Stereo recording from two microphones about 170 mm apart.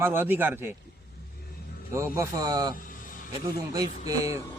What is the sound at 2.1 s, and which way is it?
Speech, 20° right (ahead or behind).